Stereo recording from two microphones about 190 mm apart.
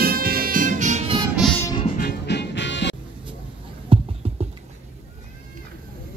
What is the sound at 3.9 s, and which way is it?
Music, 30° right (ahead or behind).